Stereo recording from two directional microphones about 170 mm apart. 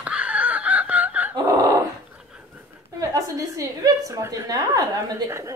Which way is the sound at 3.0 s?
20° right (ahead or behind).